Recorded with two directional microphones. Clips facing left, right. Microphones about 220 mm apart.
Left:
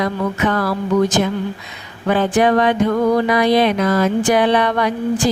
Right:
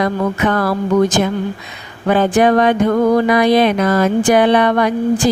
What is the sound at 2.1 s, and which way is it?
Mantra, 50° right (ahead or behind).